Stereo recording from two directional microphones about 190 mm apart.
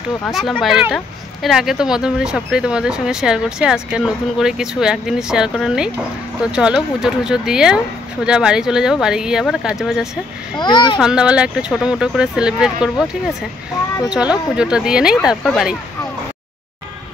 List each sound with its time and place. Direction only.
0.2 s speech: centre (ahead or behind)
10.6 s a child's voice: 25° left (ahead or behind)
11.0 s speech: 5° right (ahead or behind)
14.6 s speech: 5° right (ahead or behind)